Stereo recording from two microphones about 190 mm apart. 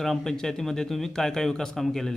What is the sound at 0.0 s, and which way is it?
Speech, centre (ahead or behind).